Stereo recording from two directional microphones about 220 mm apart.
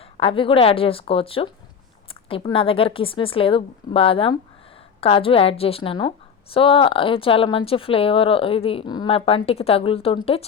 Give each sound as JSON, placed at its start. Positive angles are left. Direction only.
{"t": 0.2, "sound": "a woman's voice", "side_deg": 25}